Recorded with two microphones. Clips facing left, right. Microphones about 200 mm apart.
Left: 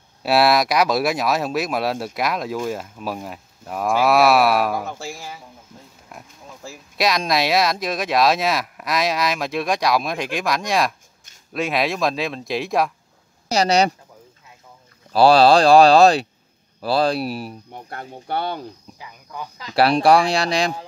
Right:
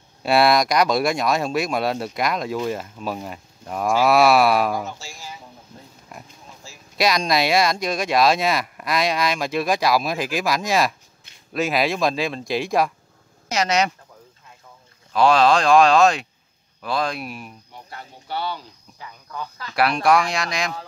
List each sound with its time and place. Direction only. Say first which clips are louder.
0.2 s speech: even; 5° left (ahead or behind)
4.8 s speech: left 4 dB; 55° left (ahead or behind)
6.1 s a sound: even; centre (ahead or behind)
6.6 s speech: left 11 dB; 55° left (ahead or behind)
7.0 s speech: even; centre (ahead or behind)
13.5 s speech: left 4 dB; 35° left (ahead or behind)
15.1 s speech: left 4 dB; 35° left (ahead or behind)
17.6 s speech: left 6 dB; 55° left (ahead or behind)
18.9 s cricket: right 3 dB; 15° left (ahead or behind)
19.7 s speech: left 4 dB; 30° left (ahead or behind)